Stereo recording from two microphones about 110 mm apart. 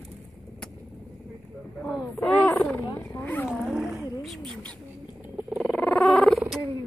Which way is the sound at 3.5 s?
5° right (ahead or behind).